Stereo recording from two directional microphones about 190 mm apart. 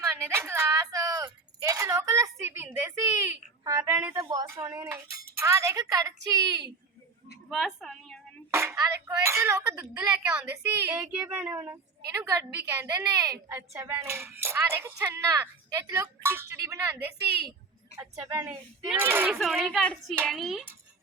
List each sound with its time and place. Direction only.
0.0 s a sound: 15° right (ahead or behind)
4.1 s a woman's voice: 20° right (ahead or behind)
7.5 s a woman's voice: centre (ahead or behind)
8.4 s a woman's voice: 15° right (ahead or behind)
18.2 s speech: 5° right (ahead or behind)